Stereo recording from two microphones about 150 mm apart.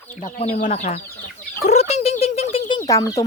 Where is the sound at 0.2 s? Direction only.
40° left (ahead or behind).